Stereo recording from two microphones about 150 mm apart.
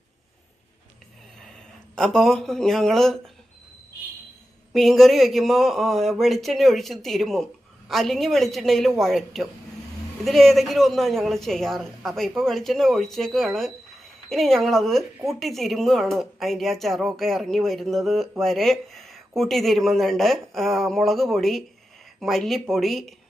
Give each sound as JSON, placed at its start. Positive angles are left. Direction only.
{"t": 2.0, "sound": "speech", "side_deg": 0}
{"t": 4.7, "sound": "speech", "side_deg": 0}